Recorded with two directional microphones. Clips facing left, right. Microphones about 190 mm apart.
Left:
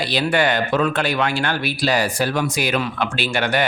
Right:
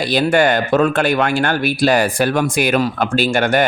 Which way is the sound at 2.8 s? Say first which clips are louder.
Right 6 dB; 40° right (ahead or behind).